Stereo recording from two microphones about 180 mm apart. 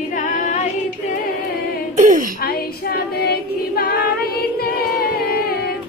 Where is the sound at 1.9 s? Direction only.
45° right (ahead or behind).